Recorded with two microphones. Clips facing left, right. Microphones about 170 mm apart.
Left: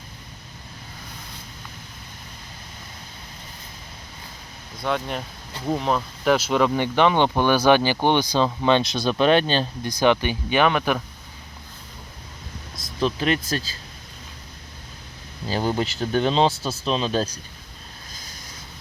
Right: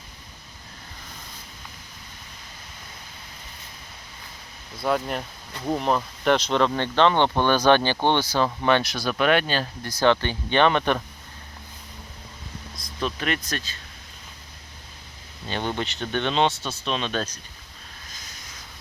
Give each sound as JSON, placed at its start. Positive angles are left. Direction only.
{"t": 4.8, "sound": "speech", "side_deg": -5}
{"t": 10.0, "sound": "speech", "side_deg": 15}
{"t": 12.7, "sound": "vehicle", "side_deg": 25}
{"t": 13.1, "sound": "speech", "side_deg": 30}
{"t": 15.4, "sound": "speech", "side_deg": 35}